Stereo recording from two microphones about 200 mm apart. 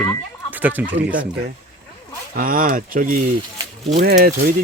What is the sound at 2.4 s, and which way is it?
Speech, 45° right (ahead or behind).